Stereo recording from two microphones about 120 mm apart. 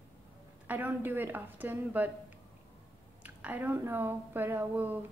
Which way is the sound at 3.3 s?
15° right (ahead or behind).